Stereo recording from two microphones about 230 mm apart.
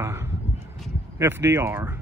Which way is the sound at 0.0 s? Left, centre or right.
Centre.